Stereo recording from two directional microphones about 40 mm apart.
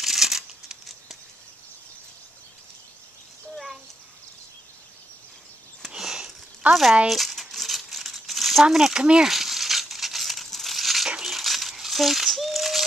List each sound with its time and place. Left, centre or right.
0.0 s crumpling: centre
3.5 s a sound: centre
5.9 s sniff: centre
6.7 s speech: centre
7.1 s crumpling: centre
8.6 s speech: centre
9.0 s speech: right
9.3 s crumpling: centre
11.2 s a sound: centre